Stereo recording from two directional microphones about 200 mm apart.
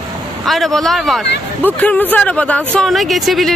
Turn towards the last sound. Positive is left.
turn(degrees=0)  # may be behind; listen again after turning